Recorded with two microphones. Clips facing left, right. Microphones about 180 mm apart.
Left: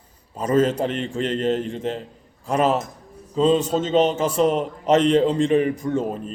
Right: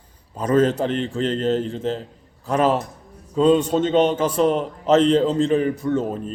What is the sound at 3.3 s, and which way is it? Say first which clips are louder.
Speech: right 2 dB; 5° right (ahead or behind).